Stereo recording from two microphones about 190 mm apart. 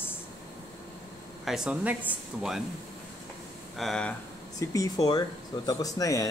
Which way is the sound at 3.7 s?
Centre (ahead or behind).